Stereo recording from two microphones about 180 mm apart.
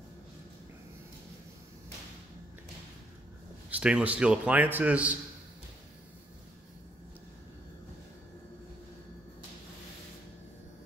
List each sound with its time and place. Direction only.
3.7 s a man's voice: 5° right (ahead or behind)